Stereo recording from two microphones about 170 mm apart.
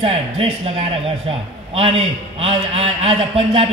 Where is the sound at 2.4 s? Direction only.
35° right (ahead or behind).